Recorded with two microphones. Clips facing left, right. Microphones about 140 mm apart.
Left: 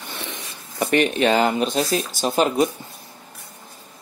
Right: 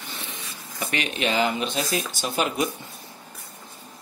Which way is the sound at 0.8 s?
55° left (ahead or behind).